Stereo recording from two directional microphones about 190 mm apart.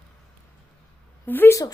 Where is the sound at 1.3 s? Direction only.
10° left (ahead or behind).